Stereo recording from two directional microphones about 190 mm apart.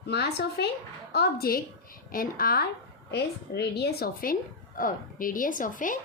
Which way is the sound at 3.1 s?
60° left (ahead or behind).